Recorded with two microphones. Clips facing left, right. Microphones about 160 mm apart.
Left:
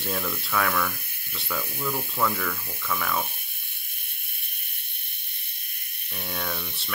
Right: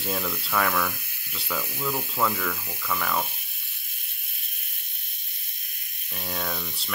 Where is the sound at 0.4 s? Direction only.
Centre (ahead or behind).